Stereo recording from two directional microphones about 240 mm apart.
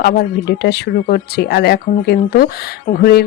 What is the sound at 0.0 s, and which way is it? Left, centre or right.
Speech, left.